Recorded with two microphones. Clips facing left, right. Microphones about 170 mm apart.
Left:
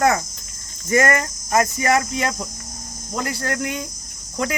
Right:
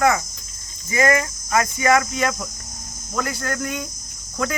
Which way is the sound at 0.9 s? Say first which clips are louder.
Left 1 dB; 50° left (ahead or behind).